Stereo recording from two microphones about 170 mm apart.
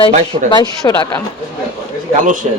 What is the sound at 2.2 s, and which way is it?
Speech, 50° right (ahead or behind).